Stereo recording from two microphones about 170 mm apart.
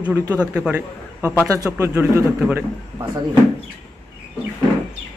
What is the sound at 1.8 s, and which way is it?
Speech, 15° right (ahead or behind).